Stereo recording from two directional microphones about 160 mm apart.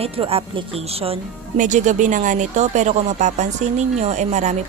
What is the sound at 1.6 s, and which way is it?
A woman's voice, 50° right (ahead or behind).